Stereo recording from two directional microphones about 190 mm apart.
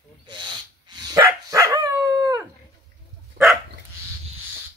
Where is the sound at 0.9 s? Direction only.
15° right (ahead or behind).